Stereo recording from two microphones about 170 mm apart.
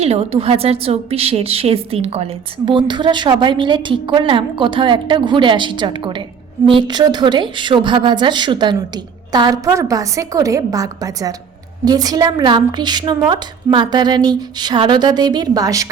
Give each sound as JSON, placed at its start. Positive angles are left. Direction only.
{"t": 0.0, "sound": "a woman's voice", "side_deg": -35}